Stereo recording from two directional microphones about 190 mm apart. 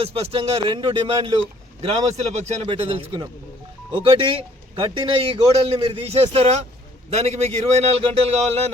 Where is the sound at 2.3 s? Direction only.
30° right (ahead or behind).